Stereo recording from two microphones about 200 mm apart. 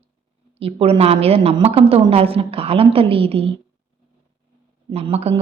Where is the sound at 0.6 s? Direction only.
30° right (ahead or behind).